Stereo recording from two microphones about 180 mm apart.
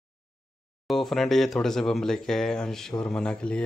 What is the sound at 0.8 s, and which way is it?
Speech, centre (ahead or behind).